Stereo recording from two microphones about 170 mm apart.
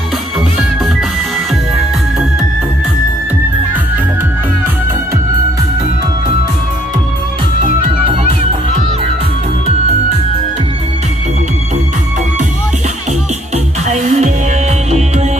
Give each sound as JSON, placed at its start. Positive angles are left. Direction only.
{"t": 13.8, "sound": "music", "side_deg": -45}